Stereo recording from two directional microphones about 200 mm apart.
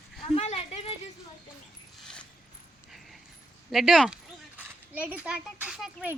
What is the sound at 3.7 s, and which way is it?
A child's voice, centre (ahead or behind).